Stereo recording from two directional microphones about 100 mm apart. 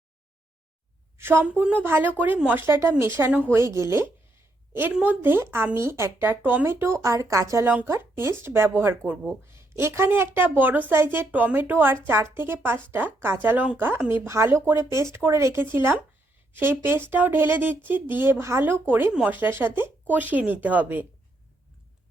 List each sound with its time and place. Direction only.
1.2 s a woman's voice: 20° right (ahead or behind)